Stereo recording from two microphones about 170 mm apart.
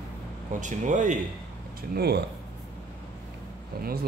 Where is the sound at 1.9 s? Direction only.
70° right (ahead or behind).